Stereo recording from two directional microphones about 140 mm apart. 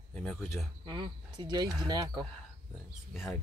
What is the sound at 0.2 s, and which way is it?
Speech, 5° left (ahead or behind).